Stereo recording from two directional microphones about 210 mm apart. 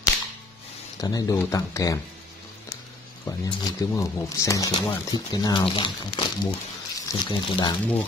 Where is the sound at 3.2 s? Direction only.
15° left (ahead or behind).